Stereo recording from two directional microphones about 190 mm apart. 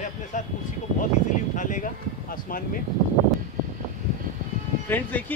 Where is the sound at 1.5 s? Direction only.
45° left (ahead or behind).